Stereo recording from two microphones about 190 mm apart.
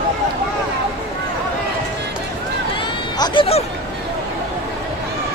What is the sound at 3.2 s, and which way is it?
Speech, 30° left (ahead or behind).